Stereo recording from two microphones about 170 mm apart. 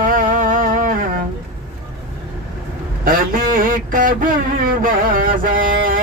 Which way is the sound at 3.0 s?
55° right (ahead or behind).